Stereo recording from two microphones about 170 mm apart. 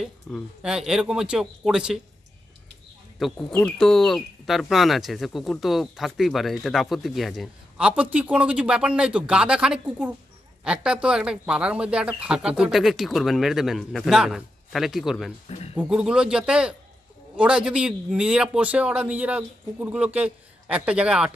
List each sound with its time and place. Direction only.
0.0 s speech: centre (ahead or behind)
3.2 s speech: centre (ahead or behind)
15.4 s a sound: 40° left (ahead or behind)
15.7 s a man's voice: 5° right (ahead or behind)